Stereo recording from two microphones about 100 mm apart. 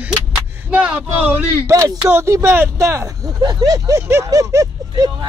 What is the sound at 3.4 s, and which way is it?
Speech, 35° right (ahead or behind).